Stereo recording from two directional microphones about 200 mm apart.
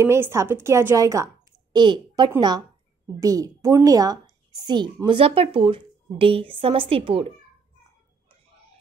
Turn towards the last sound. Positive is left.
turn(degrees=-25)  # may be behind; listen again after turning